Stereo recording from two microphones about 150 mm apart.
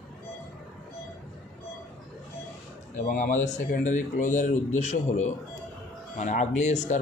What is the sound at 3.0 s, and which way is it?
A man's voice, 65° left (ahead or behind).